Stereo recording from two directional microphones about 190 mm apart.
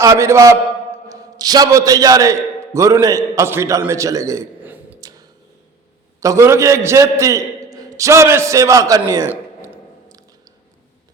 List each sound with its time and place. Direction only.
0.0 s a man's voice: 15° right (ahead or behind)
6.1 s a man's voice: 15° right (ahead or behind)